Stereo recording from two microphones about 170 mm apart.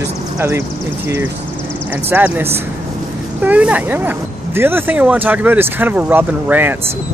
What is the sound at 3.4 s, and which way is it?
Speech, 10° right (ahead or behind).